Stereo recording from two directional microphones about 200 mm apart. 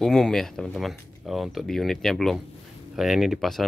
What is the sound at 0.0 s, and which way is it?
Speech, 5° left (ahead or behind).